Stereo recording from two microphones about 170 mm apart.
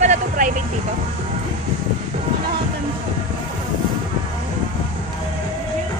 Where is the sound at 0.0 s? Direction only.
45° right (ahead or behind).